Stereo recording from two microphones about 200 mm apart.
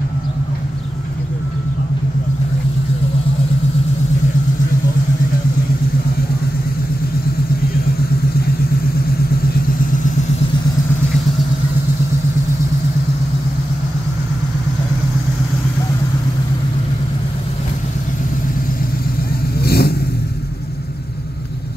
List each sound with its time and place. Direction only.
19.6 s vehicle: 50° left (ahead or behind)